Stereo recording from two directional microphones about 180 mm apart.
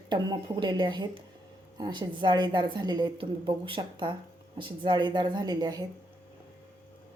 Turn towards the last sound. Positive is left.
turn(degrees=-20)  # may be behind; listen again after turning